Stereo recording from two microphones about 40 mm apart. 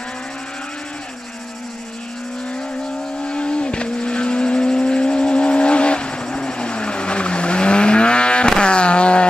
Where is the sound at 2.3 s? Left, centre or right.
Left.